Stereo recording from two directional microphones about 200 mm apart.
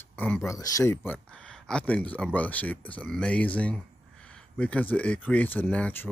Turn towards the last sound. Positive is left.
turn(degrees=5)  # may be behind; listen again after turning